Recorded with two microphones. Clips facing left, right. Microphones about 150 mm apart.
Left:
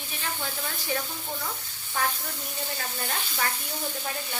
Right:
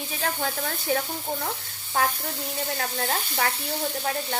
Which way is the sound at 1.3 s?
50° right (ahead or behind).